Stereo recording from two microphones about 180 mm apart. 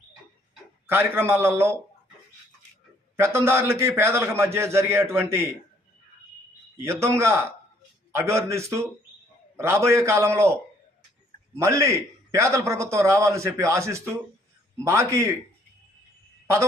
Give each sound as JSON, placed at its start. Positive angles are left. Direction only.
{"t": 0.9, "sound": "a man's voice", "side_deg": -10}
{"t": 3.2, "sound": "a man's voice", "side_deg": -15}
{"t": 7.0, "sound": "a man's voice", "side_deg": -15}
{"t": 11.5, "sound": "a man's voice", "side_deg": -15}